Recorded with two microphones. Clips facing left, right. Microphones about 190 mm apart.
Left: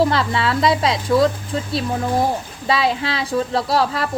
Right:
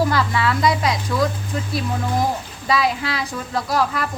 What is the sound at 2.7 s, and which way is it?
A woman's voice, 25° left (ahead or behind).